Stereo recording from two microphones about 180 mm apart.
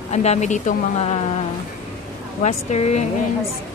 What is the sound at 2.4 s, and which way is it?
Speech, 40° left (ahead or behind).